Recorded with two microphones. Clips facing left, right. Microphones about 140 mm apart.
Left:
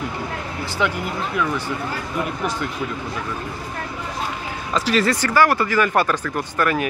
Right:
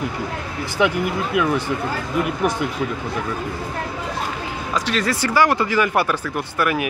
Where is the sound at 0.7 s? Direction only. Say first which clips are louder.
Right 4 dB; 15° right (ahead or behind).